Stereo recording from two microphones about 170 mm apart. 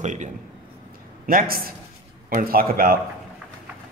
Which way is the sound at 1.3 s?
60° right (ahead or behind).